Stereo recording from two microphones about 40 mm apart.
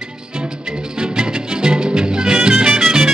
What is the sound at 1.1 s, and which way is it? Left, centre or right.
Music, right.